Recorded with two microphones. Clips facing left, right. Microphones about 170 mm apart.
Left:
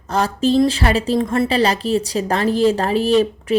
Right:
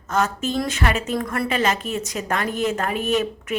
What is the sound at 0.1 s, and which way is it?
A woman's voice, 35° left (ahead or behind).